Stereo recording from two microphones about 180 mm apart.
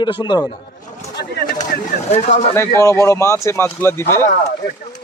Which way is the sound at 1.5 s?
45° left (ahead or behind).